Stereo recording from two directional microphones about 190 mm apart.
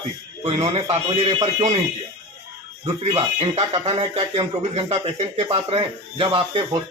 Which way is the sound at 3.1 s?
30° right (ahead or behind).